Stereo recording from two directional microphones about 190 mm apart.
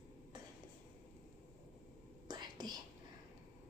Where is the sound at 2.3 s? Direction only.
20° right (ahead or behind).